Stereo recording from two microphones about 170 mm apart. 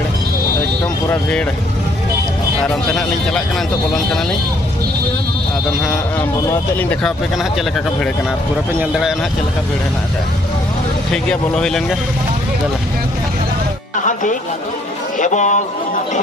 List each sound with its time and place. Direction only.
2.6 s speech: 5° left (ahead or behind)
6.5 s speech: 10° left (ahead or behind)
11.1 s speech: 5° left (ahead or behind)
15.1 s a man's voice: 45° left (ahead or behind)